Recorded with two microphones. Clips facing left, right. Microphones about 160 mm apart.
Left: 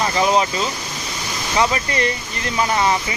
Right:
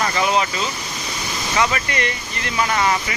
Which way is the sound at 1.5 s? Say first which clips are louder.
Left 2 dB; 25° left (ahead or behind).